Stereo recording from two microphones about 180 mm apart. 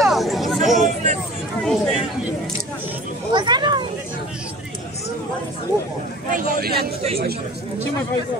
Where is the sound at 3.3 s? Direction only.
25° right (ahead or behind).